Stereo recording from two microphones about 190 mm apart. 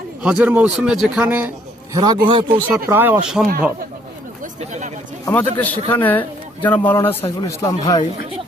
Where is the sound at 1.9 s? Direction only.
20° right (ahead or behind).